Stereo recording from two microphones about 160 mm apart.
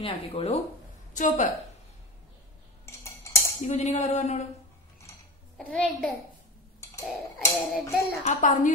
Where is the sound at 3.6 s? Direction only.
45° left (ahead or behind).